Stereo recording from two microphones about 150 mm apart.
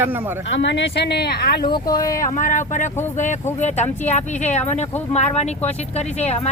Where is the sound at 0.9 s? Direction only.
90° left.